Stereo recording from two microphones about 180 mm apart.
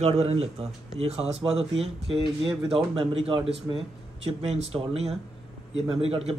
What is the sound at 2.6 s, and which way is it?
A man's voice, 30° right (ahead or behind).